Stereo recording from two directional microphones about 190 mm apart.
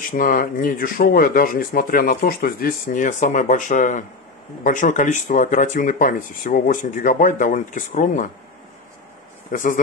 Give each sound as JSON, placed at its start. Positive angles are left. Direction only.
{"t": 0.1, "sound": "speech", "side_deg": 45}
{"t": 9.5, "sound": "speech", "side_deg": 45}